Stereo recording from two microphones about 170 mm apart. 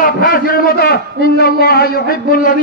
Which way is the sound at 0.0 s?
55° left (ahead or behind).